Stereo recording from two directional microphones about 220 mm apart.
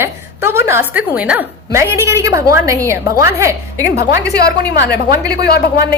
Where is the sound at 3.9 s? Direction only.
50° left (ahead or behind).